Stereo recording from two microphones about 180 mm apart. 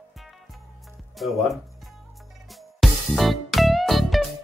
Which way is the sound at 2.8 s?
Centre (ahead or behind).